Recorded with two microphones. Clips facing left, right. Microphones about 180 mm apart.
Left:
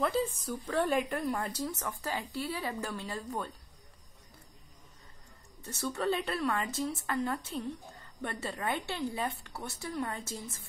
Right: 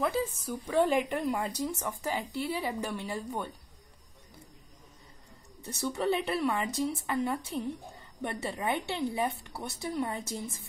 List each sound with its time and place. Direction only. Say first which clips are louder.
0.0 s speech: even; 10° right (ahead or behind)
5.6 s speech: right 2 dB; 20° right (ahead or behind)